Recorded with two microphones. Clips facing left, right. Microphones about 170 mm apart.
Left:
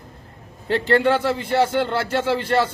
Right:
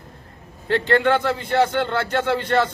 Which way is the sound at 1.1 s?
5° left (ahead or behind).